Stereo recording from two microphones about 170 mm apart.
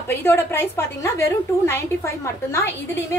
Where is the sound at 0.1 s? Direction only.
15° left (ahead or behind).